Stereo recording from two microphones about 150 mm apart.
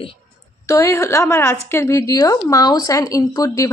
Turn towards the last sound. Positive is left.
turn(degrees=25)  # may be behind; listen again after turning